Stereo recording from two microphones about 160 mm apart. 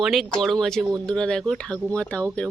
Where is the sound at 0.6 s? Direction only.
Centre (ahead or behind).